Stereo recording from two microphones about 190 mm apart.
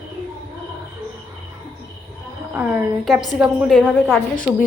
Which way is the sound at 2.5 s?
10° right (ahead or behind).